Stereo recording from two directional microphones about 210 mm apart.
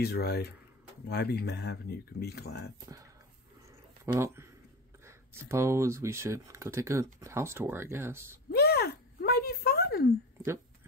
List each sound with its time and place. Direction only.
0.0 s speech: 50° left (ahead or behind)
4.0 s speech: 10° right (ahead or behind)
8.5 s a sound: 50° left (ahead or behind)